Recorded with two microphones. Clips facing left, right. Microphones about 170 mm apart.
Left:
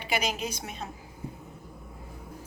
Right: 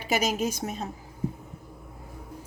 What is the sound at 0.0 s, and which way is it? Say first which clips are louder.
Speech: right 4 dB; 45° right (ahead or behind).